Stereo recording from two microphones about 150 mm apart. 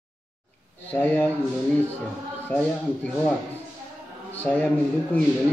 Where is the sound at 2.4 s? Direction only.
10° left (ahead or behind).